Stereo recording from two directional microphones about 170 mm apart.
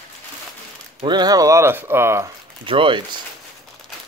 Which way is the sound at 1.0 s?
25° right (ahead or behind).